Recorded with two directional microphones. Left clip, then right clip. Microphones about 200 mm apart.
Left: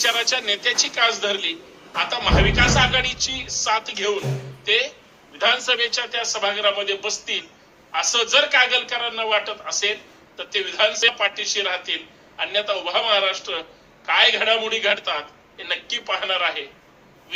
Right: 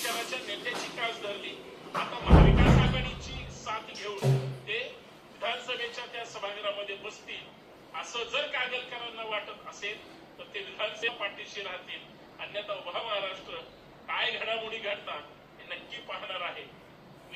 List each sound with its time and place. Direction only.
0.0 s a man's voice: 50° left (ahead or behind)
5.4 s a man's voice: 55° left (ahead or behind)